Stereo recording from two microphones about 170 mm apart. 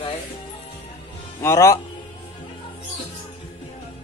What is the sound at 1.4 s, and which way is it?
Speech, 15° left (ahead or behind).